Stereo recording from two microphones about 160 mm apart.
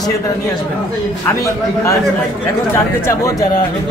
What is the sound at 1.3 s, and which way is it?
Speech, 20° left (ahead or behind).